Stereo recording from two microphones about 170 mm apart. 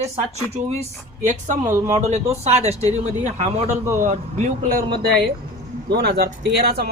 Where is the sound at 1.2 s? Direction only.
45° right (ahead or behind).